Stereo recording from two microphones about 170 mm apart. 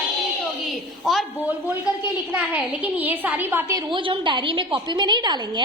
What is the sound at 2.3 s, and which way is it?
A woman's voice, 10° right (ahead or behind).